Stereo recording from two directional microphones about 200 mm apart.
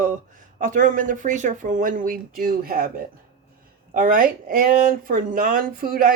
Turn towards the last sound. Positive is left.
turn(degrees=-45)  # may be behind; listen again after turning